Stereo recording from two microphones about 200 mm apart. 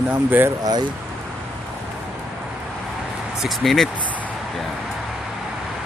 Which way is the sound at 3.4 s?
Centre (ahead or behind).